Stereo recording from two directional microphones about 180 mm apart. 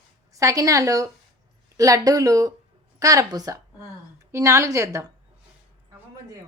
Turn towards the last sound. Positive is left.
turn(degrees=-15)  # may be behind; listen again after turning